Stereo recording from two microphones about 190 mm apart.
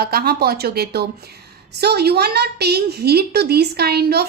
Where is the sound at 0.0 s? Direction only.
55° right (ahead or behind).